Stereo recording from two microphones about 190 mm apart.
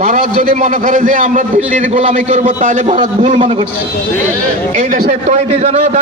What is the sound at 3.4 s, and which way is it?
Speech, 25° right (ahead or behind).